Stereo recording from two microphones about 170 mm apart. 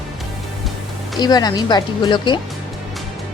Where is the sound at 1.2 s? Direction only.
25° left (ahead or behind).